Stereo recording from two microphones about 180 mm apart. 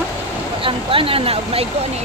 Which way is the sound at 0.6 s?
30° right (ahead or behind).